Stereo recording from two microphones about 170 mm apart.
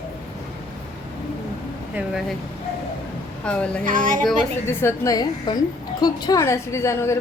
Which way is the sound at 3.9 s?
50° right (ahead or behind).